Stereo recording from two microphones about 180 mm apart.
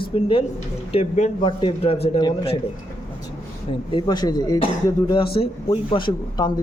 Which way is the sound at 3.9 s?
25° left (ahead or behind).